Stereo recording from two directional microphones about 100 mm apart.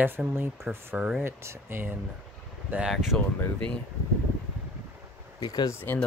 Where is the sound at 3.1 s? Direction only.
5° left (ahead or behind).